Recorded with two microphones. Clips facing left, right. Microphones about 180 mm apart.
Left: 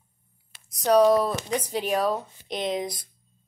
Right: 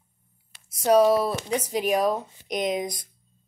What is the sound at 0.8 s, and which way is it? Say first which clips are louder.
Speech: even; 10° right (ahead or behind).